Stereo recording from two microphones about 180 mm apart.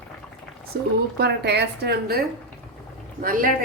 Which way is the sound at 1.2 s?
65° right (ahead or behind).